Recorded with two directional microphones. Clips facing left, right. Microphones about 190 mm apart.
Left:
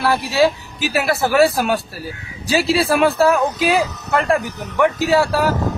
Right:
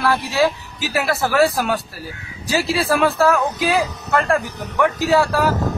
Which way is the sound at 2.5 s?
25° left (ahead or behind).